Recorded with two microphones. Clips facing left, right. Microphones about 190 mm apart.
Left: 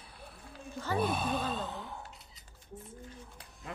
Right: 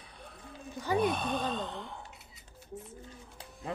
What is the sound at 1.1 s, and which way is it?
Gasp, 5° left (ahead or behind).